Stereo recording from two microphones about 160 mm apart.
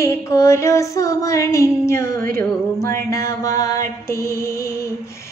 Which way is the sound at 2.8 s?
15° left (ahead or behind).